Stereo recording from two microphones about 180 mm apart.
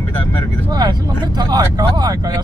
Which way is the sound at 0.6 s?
20° right (ahead or behind).